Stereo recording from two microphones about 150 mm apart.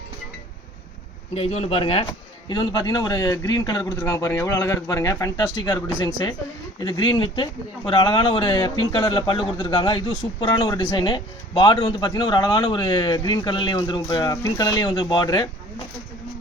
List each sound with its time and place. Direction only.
1.3 s speech: 40° left (ahead or behind); by 15.4 s 25° left (ahead or behind)